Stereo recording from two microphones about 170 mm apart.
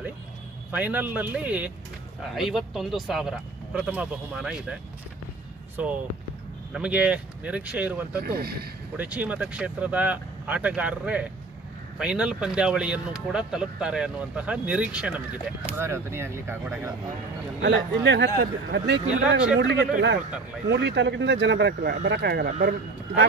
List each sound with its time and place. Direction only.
0.7 s speech: 10° right (ahead or behind)
5.8 s speech: 5° right (ahead or behind)
8.2 s speech: 65° right (ahead or behind)
8.9 s speech: 10° right (ahead or behind)
17.6 s speech: 90° right
20.6 s speech: 90° right
22.5 s speech: 55° right (ahead or behind)